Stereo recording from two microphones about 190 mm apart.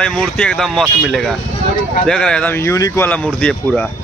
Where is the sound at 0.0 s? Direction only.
5° left (ahead or behind).